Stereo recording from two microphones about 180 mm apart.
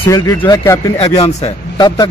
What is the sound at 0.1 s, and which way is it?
A man's voice, 20° left (ahead or behind).